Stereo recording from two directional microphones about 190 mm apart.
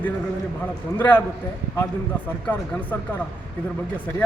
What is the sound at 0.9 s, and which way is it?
Speech, 10° left (ahead or behind).